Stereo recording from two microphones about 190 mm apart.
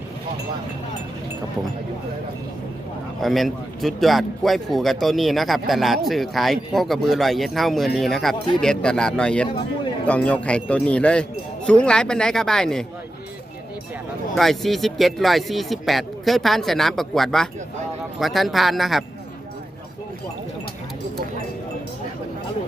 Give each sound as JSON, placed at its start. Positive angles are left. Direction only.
{"t": 3.2, "sound": "speech", "side_deg": 0}
{"t": 14.3, "sound": "speech", "side_deg": 0}